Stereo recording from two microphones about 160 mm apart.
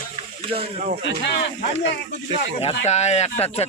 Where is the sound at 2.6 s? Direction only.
45° left (ahead or behind).